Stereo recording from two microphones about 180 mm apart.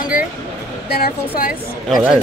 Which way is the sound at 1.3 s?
55° left (ahead or behind).